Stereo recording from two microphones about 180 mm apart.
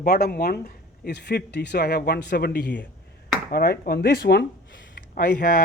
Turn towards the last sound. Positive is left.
turn(degrees=55)  # may be behind; listen again after turning